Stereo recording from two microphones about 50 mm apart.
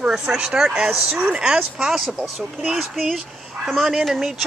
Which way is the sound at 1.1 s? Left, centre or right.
Right.